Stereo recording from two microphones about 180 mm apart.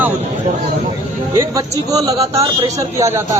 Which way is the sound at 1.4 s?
20° right (ahead or behind).